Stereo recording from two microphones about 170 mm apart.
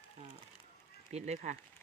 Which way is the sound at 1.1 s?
40° right (ahead or behind).